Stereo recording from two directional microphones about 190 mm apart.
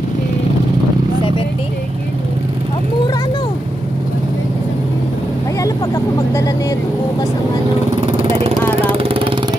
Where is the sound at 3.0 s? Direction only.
20° left (ahead or behind).